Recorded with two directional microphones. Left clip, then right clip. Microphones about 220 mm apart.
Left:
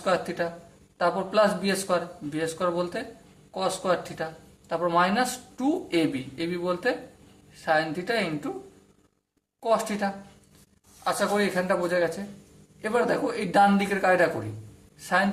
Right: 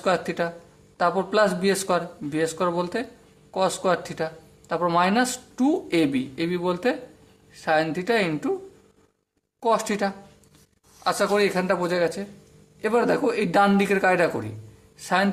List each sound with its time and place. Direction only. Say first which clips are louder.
0.0 s speech: right 2 dB; 35° right (ahead or behind)
9.6 s speech: right 3 dB; 40° right (ahead or behind)